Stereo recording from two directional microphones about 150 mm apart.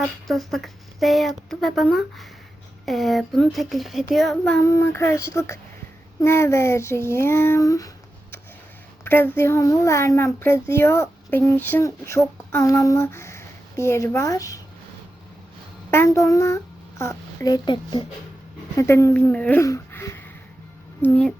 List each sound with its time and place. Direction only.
0.3 s speech: centre (ahead or behind)
4.6 s a child's voice: 20° left (ahead or behind)
9.0 s a child's voice: 10° left (ahead or behind)
15.9 s a child's voice: 20° left (ahead or behind)
19.1 s a child's voice: 10° left (ahead or behind)
19.6 s a sound: 20° left (ahead or behind)
21.0 s a child's voice: 5° left (ahead or behind)